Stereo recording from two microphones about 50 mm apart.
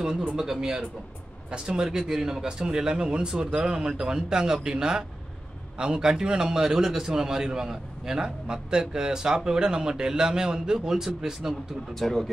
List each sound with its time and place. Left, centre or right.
0.4 s a man's voice: centre
11.9 s speech: centre